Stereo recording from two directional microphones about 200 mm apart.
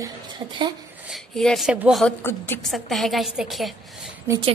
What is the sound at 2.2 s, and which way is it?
A woman's voice, 10° left (ahead or behind).